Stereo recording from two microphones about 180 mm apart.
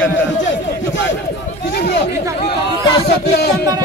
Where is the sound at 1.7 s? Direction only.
65° left (ahead or behind).